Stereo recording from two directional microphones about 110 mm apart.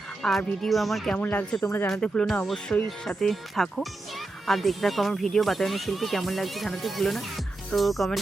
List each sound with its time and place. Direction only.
0.2 s speech: centre (ahead or behind)
1.1 s speech: 15° left (ahead or behind)
1.9 s speech: 5° left (ahead or behind)